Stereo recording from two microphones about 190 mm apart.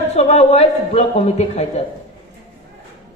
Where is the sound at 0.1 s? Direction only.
35° left (ahead or behind).